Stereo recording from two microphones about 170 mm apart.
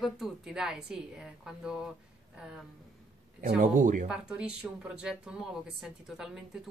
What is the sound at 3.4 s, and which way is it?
Speech, 50° right (ahead or behind).